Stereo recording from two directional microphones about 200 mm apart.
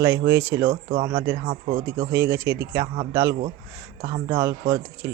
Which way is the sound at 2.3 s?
60° right (ahead or behind).